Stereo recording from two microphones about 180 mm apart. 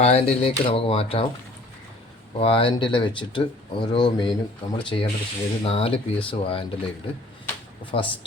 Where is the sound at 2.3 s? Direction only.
30° left (ahead or behind).